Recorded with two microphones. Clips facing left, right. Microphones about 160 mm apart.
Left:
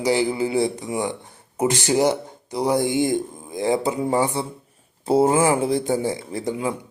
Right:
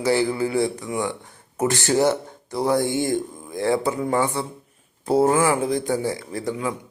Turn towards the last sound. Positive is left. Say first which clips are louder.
# left 1 dB
turn(degrees=25)  # may be behind; listen again after turning